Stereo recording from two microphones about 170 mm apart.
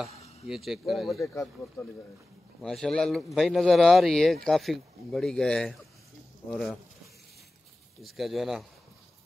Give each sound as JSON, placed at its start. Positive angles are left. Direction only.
{"t": 0.5, "sound": "speech", "side_deg": 0}
{"t": 2.6, "sound": "speech", "side_deg": 5}
{"t": 8.0, "sound": "speech", "side_deg": 0}